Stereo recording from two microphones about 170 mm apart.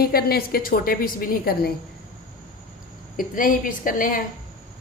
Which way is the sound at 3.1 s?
55° left (ahead or behind).